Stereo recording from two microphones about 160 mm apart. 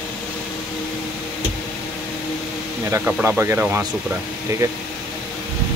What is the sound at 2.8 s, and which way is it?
Speech, 10° right (ahead or behind).